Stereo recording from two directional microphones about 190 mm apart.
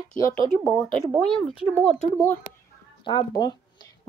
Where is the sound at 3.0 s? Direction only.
20° left (ahead or behind).